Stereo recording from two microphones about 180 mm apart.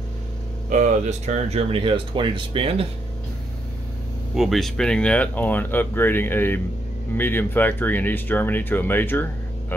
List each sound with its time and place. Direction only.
0.7 s speech: 40° right (ahead or behind)
4.4 s speech: centre (ahead or behind)